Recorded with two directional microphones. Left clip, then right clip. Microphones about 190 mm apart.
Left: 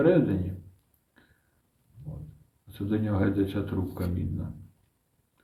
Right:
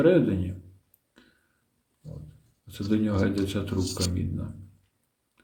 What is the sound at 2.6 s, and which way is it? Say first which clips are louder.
Speech: right 3 dB; 55° right (ahead or behind).